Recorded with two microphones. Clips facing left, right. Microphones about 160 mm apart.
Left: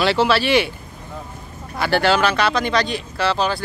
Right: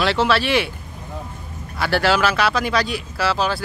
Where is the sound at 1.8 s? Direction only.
Centre (ahead or behind).